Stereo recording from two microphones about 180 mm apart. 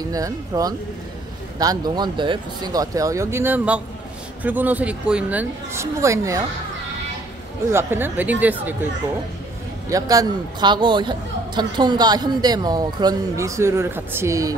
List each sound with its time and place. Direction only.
0.1 s a woman's voice: 20° right (ahead or behind)
7.7 s a woman's voice: 10° right (ahead or behind)
9.8 s speech: 20° right (ahead or behind)